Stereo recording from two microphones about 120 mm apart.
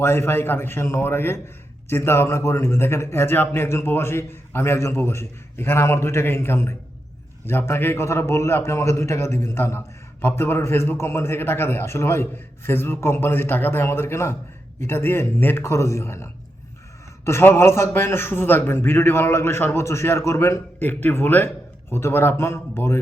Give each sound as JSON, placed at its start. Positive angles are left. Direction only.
{"t": 0.0, "sound": "a man's voice", "side_deg": 20}